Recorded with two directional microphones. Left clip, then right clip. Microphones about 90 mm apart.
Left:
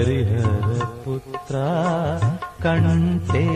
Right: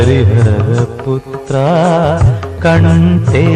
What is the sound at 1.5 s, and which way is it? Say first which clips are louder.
Music: right 12 dB; 30° left (ahead or behind).